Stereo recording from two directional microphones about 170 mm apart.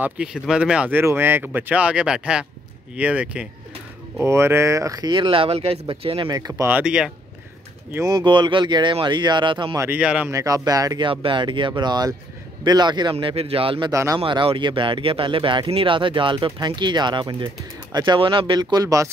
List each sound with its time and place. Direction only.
0.0 s speech: 5° right (ahead or behind); by 6.2 s 30° right (ahead or behind)
6.2 s speech: 20° right (ahead or behind)
6.7 s speech: 5° right (ahead or behind)
7.9 s speech: 20° right (ahead or behind)
9.8 s speech: 10° right (ahead or behind)
10.3 s speech: 20° right (ahead or behind)
13.9 s speech: 15° right (ahead or behind)
14.2 s speech: 30° right (ahead or behind)